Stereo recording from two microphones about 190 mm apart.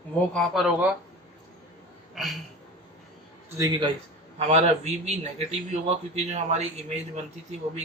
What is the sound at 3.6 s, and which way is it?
Speech, 20° right (ahead or behind).